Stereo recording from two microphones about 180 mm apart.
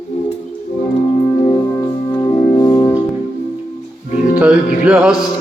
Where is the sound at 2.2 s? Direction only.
25° left (ahead or behind).